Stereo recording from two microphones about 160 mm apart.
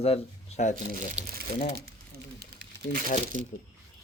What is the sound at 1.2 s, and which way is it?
Speech, 40° right (ahead or behind).